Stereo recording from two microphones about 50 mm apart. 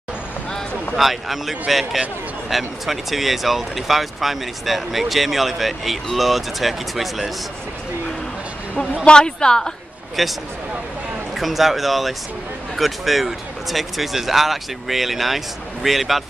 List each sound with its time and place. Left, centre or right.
0.9 s speech: centre
9.0 s a woman's voice: centre
10.2 s speech: centre